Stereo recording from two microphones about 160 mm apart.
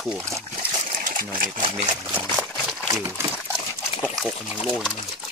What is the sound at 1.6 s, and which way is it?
Speech, 35° right (ahead or behind).